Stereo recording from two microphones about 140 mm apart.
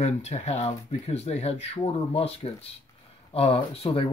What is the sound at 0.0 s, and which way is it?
Speech, 55° left (ahead or behind).